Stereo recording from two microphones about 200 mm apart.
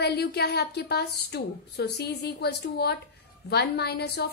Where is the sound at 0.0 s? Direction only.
55° left (ahead or behind).